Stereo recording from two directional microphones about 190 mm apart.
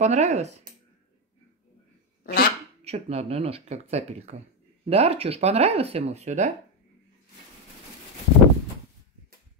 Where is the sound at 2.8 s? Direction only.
35° right (ahead or behind).